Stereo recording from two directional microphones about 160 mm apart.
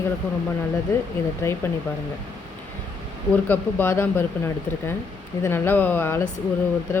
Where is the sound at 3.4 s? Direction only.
15° left (ahead or behind).